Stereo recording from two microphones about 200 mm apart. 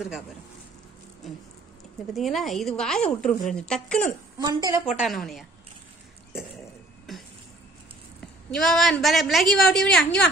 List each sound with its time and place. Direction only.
2.1 s a woman's voice: centre (ahead or behind)
4.4 s a woman's voice: 20° right (ahead or behind)
4.8 s a woman's voice: centre (ahead or behind)
8.5 s a woman's voice: 5° left (ahead or behind)